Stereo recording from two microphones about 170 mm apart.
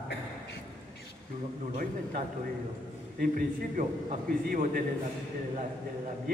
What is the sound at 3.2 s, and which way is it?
A man's voice, 60° right (ahead or behind).